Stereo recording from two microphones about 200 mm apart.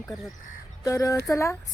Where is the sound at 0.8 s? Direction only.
15° left (ahead or behind).